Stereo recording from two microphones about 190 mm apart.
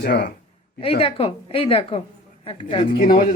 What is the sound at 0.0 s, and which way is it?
Speech, 60° left (ahead or behind).